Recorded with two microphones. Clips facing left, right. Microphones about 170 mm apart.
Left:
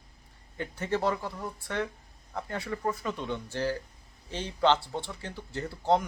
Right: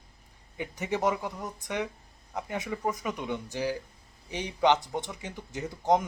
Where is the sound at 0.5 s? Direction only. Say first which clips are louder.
Left 1 dB; 15° right (ahead or behind).